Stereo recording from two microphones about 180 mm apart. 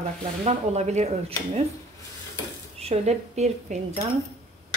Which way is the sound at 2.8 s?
35° right (ahead or behind).